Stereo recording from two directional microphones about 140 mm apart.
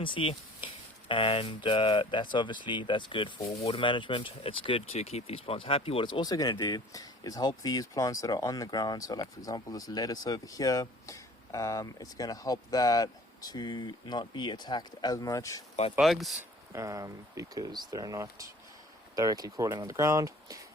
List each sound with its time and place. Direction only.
0.0 s speech: 40° left (ahead or behind)
16.0 s speech: centre (ahead or behind)
16.4 s speech: 20° right (ahead or behind)